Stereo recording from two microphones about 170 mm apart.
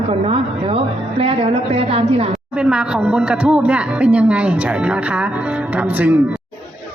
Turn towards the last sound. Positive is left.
turn(degrees=-10)  # may be behind; listen again after turning